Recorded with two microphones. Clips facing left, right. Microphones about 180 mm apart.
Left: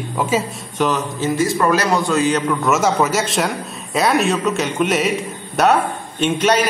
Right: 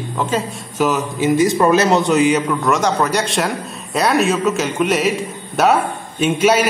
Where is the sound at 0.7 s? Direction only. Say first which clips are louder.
Right 2 dB; 5° right (ahead or behind).